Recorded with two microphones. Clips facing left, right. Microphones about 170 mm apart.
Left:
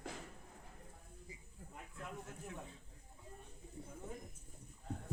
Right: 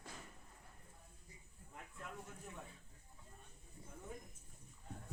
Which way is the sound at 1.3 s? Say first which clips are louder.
Left 7 dB; 90° left.